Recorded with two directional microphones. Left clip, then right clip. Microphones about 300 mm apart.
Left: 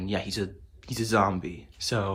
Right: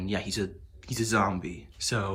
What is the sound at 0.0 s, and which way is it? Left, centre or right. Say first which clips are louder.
Speech: left 1 dB; centre.